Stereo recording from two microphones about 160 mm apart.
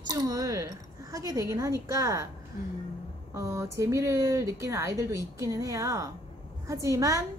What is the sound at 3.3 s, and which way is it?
A woman's voice, 20° right (ahead or behind).